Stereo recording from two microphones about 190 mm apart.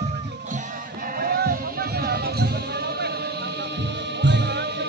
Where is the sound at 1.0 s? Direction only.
50° right (ahead or behind).